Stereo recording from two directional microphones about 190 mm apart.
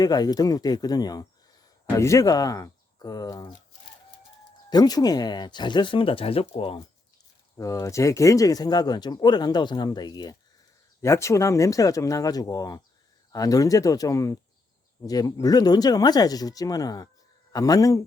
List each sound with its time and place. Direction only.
0.0 s speech: 20° left (ahead or behind)
4.7 s speech: 20° left (ahead or behind)
7.6 s speech: 15° left (ahead or behind)